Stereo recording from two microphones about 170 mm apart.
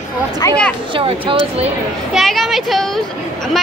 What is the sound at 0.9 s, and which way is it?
Speech, 30° right (ahead or behind).